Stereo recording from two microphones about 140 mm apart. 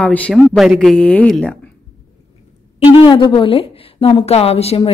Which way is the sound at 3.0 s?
35° left (ahead or behind).